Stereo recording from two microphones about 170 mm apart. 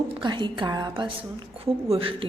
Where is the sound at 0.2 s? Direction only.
30° right (ahead or behind).